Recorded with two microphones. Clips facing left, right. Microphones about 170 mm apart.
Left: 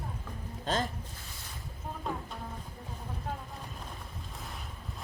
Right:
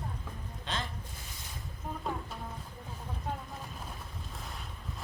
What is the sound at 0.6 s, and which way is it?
Speech, 40° left (ahead or behind).